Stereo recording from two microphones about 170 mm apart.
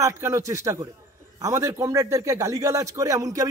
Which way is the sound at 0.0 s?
15° right (ahead or behind).